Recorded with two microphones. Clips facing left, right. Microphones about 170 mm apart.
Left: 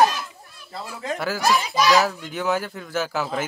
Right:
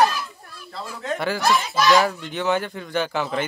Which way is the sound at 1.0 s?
5° left (ahead or behind).